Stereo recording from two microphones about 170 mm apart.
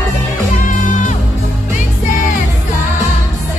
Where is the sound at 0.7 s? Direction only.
50° left (ahead or behind).